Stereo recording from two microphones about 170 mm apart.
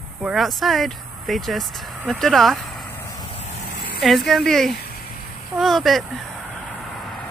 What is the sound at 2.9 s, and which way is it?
Vehicle, 20° left (ahead or behind).